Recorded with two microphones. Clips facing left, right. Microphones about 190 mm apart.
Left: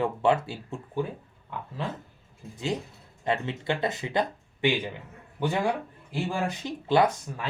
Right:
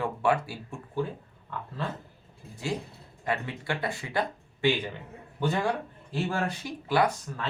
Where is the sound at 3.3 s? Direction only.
25° left (ahead or behind).